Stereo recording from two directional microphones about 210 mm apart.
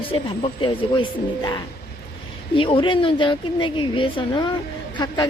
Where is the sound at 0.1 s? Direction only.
25° left (ahead or behind).